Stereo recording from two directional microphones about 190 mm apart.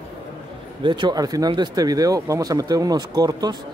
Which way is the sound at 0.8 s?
25° right (ahead or behind).